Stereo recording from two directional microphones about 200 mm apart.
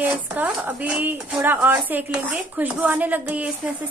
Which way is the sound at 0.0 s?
5° right (ahead or behind).